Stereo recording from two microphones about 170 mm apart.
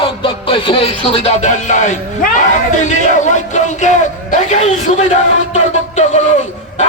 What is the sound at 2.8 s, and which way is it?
Speech, 45° left (ahead or behind).